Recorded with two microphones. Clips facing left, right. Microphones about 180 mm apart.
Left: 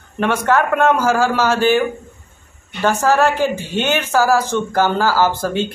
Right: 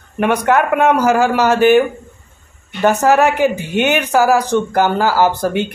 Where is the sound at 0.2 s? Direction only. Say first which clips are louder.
Right 2 dB; 15° right (ahead or behind).